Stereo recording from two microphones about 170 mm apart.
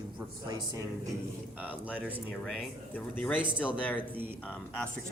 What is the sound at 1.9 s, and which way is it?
Speech, 10° right (ahead or behind).